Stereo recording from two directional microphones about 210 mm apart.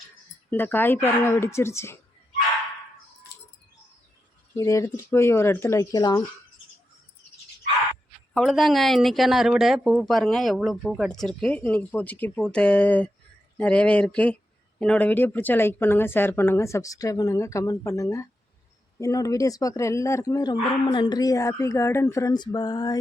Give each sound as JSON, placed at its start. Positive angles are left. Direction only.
{"t": 0.5, "sound": "speech", "side_deg": 10}
{"t": 4.5, "sound": "speech", "side_deg": 15}
{"t": 8.3, "sound": "speech", "side_deg": 0}